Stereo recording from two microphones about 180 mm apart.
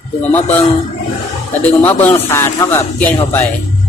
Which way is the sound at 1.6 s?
10° left (ahead or behind).